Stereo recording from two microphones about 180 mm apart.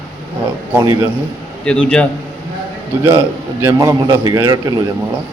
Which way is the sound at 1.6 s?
5° left (ahead or behind).